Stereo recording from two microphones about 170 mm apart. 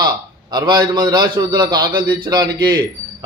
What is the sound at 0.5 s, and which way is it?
A man's voice, 25° right (ahead or behind).